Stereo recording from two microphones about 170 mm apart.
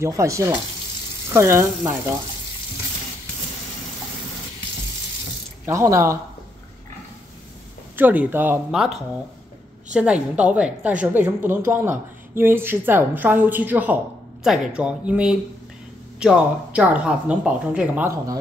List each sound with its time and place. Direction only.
0.0 s a woman's voice: 20° right (ahead or behind)
5.7 s a woman's voice: 15° right (ahead or behind)
7.9 s a woman's voice: 10° right (ahead or behind)
9.9 s a woman's voice: 5° right (ahead or behind)